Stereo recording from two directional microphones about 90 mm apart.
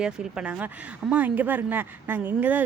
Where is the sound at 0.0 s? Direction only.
10° right (ahead or behind).